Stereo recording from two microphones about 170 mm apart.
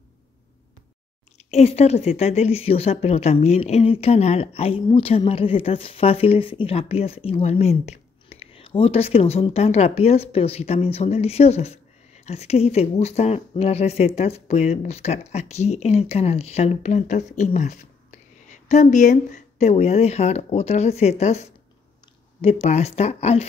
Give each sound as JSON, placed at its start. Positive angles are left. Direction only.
{"t": 1.4, "sound": "speech", "side_deg": 40}